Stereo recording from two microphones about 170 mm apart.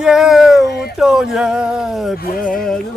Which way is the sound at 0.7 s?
65° left (ahead or behind).